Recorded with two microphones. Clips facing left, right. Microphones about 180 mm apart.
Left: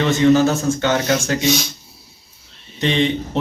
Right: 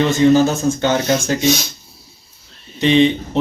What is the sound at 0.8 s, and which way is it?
Speech, 40° right (ahead or behind).